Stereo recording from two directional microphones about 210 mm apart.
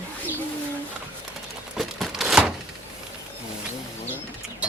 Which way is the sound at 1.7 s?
Centre (ahead or behind).